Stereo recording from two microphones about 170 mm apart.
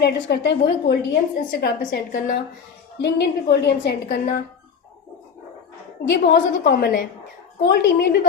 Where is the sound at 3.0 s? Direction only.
80° left.